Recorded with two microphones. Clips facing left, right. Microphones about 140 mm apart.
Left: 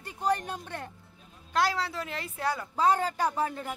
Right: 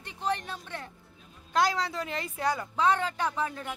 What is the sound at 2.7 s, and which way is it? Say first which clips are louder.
Speech: left 3 dB; 40° left (ahead or behind).